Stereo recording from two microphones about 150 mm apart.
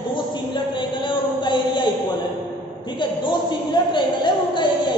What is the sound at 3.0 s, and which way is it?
A woman's voice, 30° left (ahead or behind).